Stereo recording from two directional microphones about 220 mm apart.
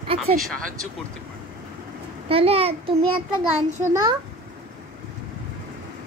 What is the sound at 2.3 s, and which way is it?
Speech, 25° right (ahead or behind).